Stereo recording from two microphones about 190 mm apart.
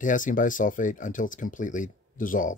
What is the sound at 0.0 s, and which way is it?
Speech, 45° left (ahead or behind).